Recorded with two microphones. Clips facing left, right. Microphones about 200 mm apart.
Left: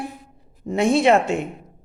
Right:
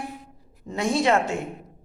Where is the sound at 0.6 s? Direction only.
35° left (ahead or behind).